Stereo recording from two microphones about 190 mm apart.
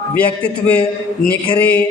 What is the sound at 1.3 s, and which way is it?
Speech, 10° left (ahead or behind).